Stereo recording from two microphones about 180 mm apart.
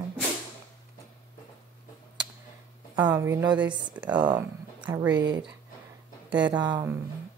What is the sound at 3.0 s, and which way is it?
A woman's voice, 10° right (ahead or behind).